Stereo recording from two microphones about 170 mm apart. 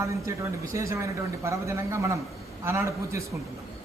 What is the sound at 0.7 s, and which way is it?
A man's voice, 15° right (ahead or behind).